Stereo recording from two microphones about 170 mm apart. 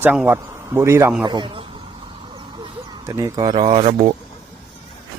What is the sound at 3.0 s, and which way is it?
Speech, 20° right (ahead or behind).